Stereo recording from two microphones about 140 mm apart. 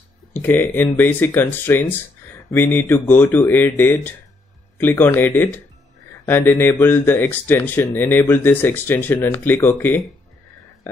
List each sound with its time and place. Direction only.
0.3 s speech: 15° left (ahead or behind)